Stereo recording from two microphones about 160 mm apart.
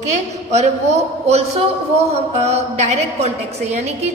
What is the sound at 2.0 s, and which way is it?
A woman's voice, 40° right (ahead or behind).